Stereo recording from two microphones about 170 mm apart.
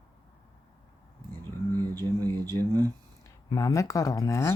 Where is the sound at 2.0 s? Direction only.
25° right (ahead or behind).